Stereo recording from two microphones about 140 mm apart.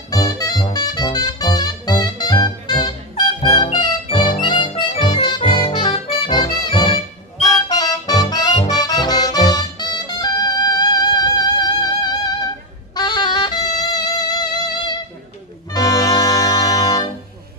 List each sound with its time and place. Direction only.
0.1 s music: 25° left (ahead or behind)